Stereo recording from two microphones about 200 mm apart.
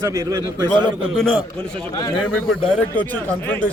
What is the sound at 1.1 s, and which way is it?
A man's voice, 5° left (ahead or behind).